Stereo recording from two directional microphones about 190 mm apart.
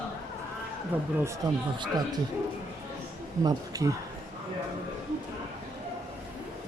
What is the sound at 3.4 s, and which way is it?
Speech, 20° right (ahead or behind).